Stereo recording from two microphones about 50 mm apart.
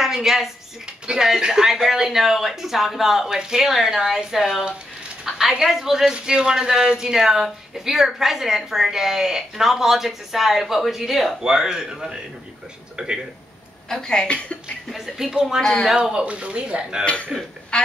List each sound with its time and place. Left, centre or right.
0.0 s a woman's voice: centre
5.3 s a sound: centre
5.6 s speech: centre
11.4 s speech: centre
13.8 s a woman's voice: centre
14.9 s speech: centre; by 17.0 s right
17.3 s speech: centre
17.7 s speech: centre